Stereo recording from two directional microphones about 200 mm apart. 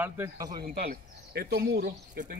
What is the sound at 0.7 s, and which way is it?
Speech, 50° right (ahead or behind).